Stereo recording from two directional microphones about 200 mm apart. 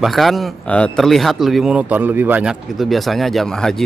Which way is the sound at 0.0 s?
Centre (ahead or behind).